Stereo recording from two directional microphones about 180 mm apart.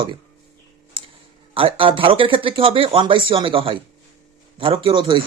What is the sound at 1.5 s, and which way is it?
Speech, 30° right (ahead or behind).